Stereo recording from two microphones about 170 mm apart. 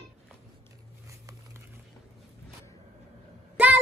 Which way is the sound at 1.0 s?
20° right (ahead or behind).